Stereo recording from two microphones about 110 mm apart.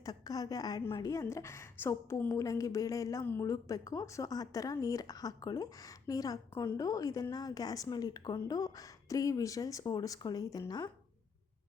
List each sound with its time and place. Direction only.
0.0 s a woman's voice: 35° left (ahead or behind)
3.5 s a woman's voice: 30° left (ahead or behind)